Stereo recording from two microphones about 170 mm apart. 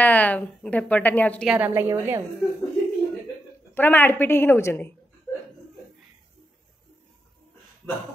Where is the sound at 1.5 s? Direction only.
10° right (ahead or behind).